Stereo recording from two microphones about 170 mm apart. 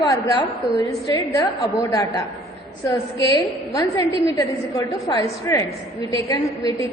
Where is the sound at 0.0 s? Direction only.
25° left (ahead or behind).